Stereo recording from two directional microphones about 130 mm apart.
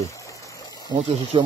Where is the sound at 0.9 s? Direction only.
25° right (ahead or behind).